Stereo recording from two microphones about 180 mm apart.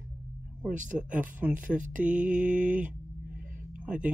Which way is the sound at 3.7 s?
5° right (ahead or behind).